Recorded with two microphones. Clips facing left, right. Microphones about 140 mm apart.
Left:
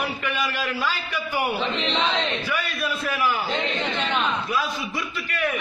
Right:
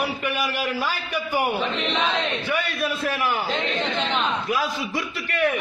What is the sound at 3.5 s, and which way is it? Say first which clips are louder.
Speech: right 1 dB; 15° left (ahead or behind).